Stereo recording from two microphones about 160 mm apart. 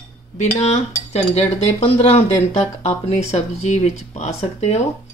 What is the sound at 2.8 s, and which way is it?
Speech, 45° left (ahead or behind).